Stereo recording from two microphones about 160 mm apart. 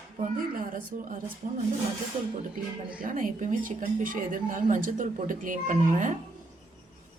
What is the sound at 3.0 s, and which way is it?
A woman's voice, 55° right (ahead or behind).